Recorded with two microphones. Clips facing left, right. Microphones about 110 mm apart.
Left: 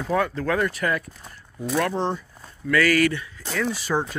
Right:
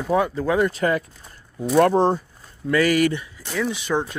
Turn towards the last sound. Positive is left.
turn(degrees=5)  # may be behind; listen again after turning